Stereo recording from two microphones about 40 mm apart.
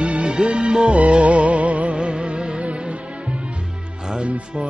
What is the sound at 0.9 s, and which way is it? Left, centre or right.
Music, right.